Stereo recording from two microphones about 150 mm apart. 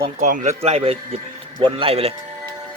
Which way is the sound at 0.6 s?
40° right (ahead or behind).